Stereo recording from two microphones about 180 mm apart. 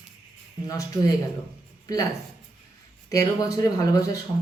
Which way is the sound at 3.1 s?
20° left (ahead or behind).